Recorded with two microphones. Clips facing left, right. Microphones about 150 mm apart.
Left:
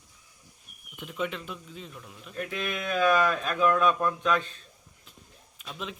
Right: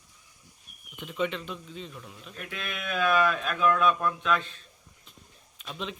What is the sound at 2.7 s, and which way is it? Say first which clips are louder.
Speech: left 2 dB; 45° left (ahead or behind).